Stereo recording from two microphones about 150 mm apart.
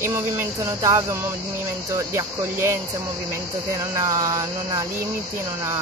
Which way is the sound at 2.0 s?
20° right (ahead or behind).